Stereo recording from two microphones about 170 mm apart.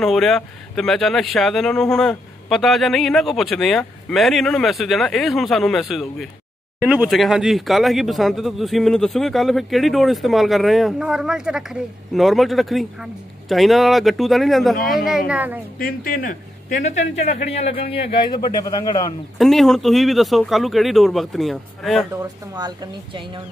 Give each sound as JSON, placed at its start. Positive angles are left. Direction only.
{"t": 0.0, "sound": "a woman's voice", "side_deg": 0}
{"t": 15.8, "sound": "speech", "side_deg": 60}
{"t": 16.7, "sound": "a man's voice", "side_deg": 40}
{"t": 19.3, "sound": "speech", "side_deg": 0}
{"t": 22.1, "sound": "speech", "side_deg": -20}